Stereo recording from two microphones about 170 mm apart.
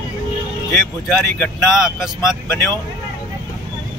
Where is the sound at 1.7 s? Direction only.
5° right (ahead or behind).